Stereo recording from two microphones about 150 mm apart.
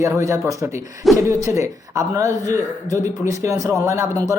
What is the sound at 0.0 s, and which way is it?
Speech, 20° right (ahead or behind).